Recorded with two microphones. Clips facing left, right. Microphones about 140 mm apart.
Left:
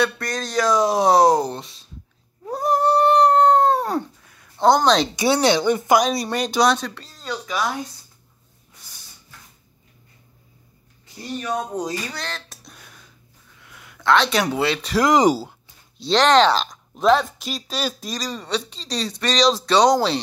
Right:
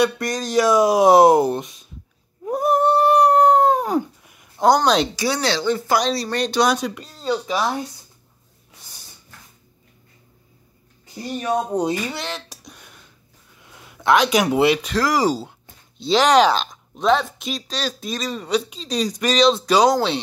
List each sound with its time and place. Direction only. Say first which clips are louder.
0.0 s speech: right 3 dB; 15° right (ahead or behind)
2.4 s cat: right 2 dB; 10° right (ahead or behind)
4.7 s speech: even; centre (ahead or behind)
5.1 s speech: left 4 dB; 20° left (ahead or behind); by 6.7 s 5° left (ahead or behind)
6.7 s speech: right 1 dB; 10° right (ahead or behind)
7.2 s speech: right 4 dB; 30° right (ahead or behind)
11.4 s speech: right 5 dB; 25° right (ahead or behind)
12.4 s a sound: right 2 dB; centre (ahead or behind)
13.6 s a sound: right 2 dB; 25° right (ahead or behind)
14.1 s speech: right 3 dB; 10° right (ahead or behind)
15.0 s speech: left 7 dB; 20° left (ahead or behind)
16.0 s speech: right 1 dB; 5° right (ahead or behind)
18.1 s speech: right 4 dB; 5° right (ahead or behind)